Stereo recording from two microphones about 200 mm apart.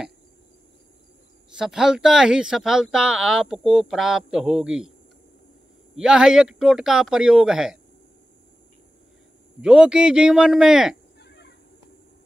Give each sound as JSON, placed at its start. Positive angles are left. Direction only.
{"t": 1.6, "sound": "speech", "side_deg": -5}
{"t": 5.9, "sound": "speech", "side_deg": -5}
{"t": 9.6, "sound": "speech", "side_deg": -5}
{"t": 11.1, "sound": "fowl", "side_deg": 55}